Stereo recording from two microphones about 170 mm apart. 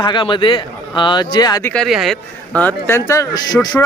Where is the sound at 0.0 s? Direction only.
30° left (ahead or behind).